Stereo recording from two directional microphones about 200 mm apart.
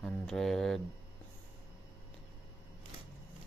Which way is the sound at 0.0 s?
5° left (ahead or behind).